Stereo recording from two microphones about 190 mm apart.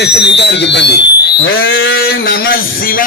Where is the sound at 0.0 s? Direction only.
60° left (ahead or behind).